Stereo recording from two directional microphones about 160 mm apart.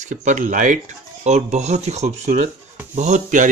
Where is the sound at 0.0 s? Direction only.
50° right (ahead or behind).